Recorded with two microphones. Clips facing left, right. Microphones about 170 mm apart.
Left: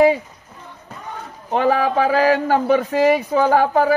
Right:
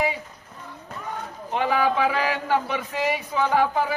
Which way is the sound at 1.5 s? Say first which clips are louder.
Left 5 dB; 40° left (ahead or behind).